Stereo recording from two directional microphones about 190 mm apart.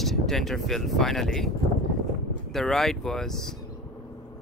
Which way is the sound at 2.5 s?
Centre (ahead or behind).